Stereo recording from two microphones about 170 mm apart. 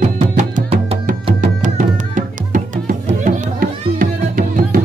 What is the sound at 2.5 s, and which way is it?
Music, 50° right (ahead or behind).